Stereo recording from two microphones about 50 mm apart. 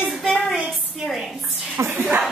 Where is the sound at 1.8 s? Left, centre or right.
Right.